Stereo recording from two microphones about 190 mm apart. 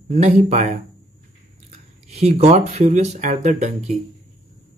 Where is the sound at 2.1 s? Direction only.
35° right (ahead or behind).